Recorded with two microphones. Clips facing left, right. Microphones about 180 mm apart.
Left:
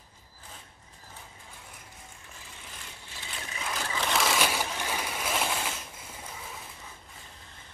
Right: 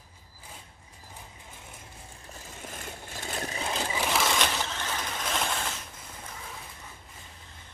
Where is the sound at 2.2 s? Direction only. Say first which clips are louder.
Right 10 dB; 45° right (ahead or behind).